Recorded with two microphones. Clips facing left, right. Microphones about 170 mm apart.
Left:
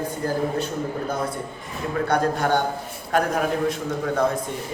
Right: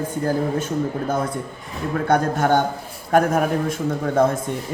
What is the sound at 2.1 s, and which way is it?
Speech, 45° right (ahead or behind).